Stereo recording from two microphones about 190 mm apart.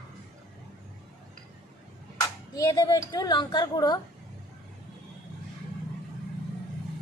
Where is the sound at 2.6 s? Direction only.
20° left (ahead or behind).